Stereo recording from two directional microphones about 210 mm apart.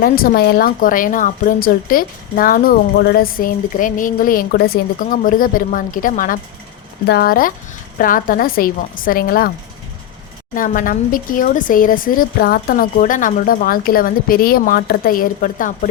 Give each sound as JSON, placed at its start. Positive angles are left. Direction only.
{"t": 0.0, "sound": "a woman's voice", "side_deg": 45}
{"t": 10.5, "sound": "speech", "side_deg": 40}